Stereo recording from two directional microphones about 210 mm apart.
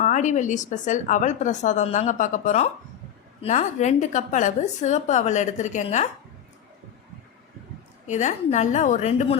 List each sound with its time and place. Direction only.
0.0 s speech: 35° left (ahead or behind)
8.0 s speech: 35° left (ahead or behind)